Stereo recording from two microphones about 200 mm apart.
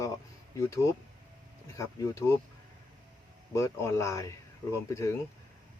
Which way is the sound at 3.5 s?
15° left (ahead or behind).